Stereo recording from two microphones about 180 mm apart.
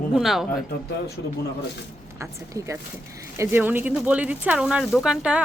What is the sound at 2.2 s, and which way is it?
Speech, 15° right (ahead or behind).